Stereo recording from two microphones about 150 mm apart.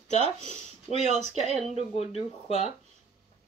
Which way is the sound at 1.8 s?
45° left (ahead or behind).